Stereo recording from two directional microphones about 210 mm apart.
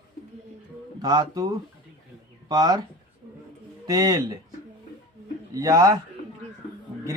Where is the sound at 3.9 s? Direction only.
20° right (ahead or behind).